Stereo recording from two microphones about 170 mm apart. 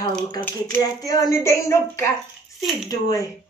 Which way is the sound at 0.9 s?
20° left (ahead or behind).